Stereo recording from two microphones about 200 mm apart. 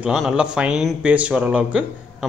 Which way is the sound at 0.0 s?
5° right (ahead or behind).